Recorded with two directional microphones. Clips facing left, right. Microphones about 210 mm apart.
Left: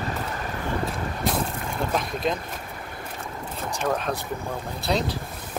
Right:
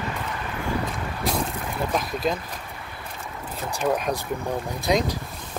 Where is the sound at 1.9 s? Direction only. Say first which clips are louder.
Right 1 dB; centre (ahead or behind).